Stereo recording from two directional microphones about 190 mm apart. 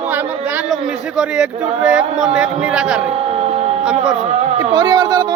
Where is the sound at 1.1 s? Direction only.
5° right (ahead or behind).